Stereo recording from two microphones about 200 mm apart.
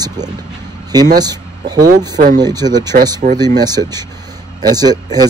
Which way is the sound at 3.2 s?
40° right (ahead or behind).